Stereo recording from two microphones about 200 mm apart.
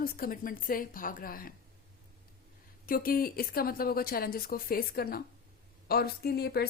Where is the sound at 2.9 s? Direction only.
45° left (ahead or behind).